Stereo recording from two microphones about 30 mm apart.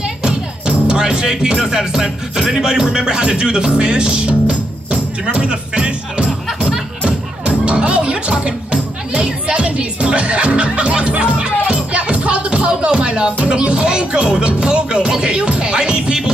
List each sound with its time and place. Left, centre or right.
0.2 s music: right